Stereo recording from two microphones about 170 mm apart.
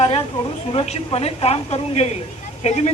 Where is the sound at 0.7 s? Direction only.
35° left (ahead or behind).